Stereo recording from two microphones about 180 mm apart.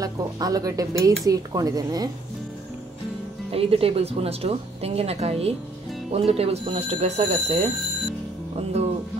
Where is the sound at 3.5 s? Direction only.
30° right (ahead or behind).